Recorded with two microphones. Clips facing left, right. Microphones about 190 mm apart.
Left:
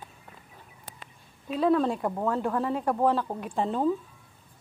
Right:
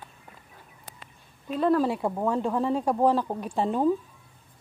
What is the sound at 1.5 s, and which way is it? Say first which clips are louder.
Speech: right 1 dB; centre (ahead or behind).